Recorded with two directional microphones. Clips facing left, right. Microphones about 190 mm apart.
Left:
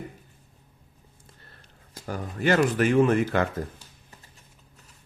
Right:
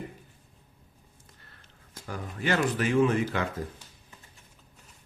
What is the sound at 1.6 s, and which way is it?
Speech, 40° left (ahead or behind).